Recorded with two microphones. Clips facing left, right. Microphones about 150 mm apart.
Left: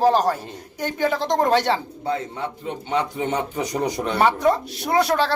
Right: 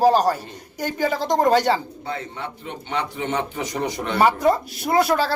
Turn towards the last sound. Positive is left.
turn(degrees=-5)  # may be behind; listen again after turning